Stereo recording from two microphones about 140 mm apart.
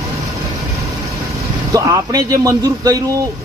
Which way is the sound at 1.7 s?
25° right (ahead or behind).